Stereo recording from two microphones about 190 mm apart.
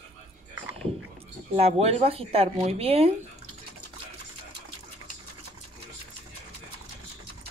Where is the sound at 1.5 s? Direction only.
30° right (ahead or behind).